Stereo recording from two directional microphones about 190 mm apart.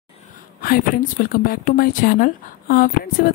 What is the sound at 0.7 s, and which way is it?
Speech, 50° left (ahead or behind).